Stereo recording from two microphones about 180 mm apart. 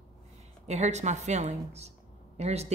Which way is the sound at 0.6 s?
40° right (ahead or behind).